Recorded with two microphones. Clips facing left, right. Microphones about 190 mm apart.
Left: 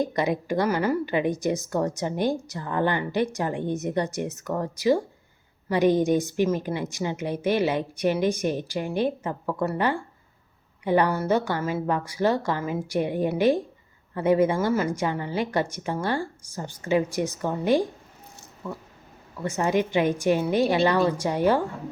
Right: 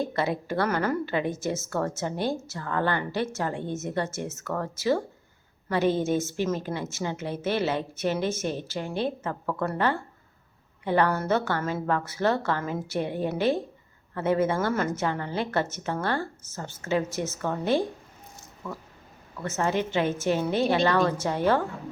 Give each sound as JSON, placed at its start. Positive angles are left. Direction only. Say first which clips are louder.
{"t": 0.0, "sound": "a woman's voice", "louder": "left 3 dB", "side_deg": 15}
{"t": 19.4, "sound": "a woman's voice", "louder": "left 3 dB", "side_deg": 15}